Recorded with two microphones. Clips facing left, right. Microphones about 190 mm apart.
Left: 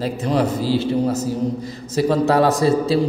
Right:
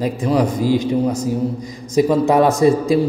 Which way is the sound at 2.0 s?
15° right (ahead or behind).